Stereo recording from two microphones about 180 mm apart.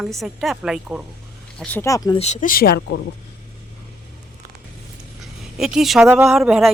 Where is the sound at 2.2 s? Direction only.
40° left (ahead or behind).